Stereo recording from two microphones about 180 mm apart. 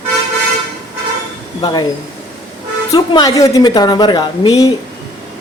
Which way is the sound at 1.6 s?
25° left (ahead or behind).